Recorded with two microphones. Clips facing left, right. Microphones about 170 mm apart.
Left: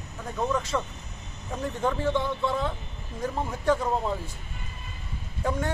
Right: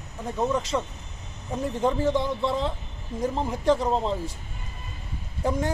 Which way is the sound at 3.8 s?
20° right (ahead or behind).